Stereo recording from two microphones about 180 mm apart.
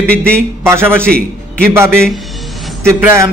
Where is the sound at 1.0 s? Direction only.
5° left (ahead or behind).